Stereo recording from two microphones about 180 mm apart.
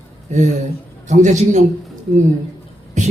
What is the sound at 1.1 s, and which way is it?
Speech, 40° right (ahead or behind).